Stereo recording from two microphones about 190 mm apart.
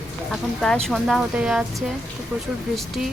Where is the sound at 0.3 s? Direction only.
5° left (ahead or behind).